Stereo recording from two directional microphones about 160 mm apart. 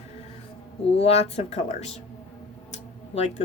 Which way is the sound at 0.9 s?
40° left (ahead or behind).